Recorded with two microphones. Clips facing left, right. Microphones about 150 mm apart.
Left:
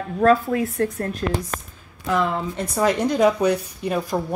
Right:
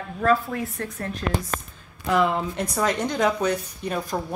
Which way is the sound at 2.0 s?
5° right (ahead or behind).